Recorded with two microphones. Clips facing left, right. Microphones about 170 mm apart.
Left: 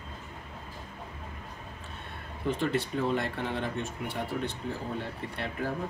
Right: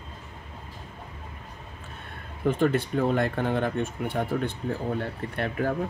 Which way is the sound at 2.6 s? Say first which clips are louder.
Right 6 dB; 50° right (ahead or behind).